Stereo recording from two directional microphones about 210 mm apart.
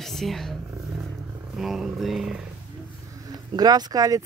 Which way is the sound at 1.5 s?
Centre (ahead or behind).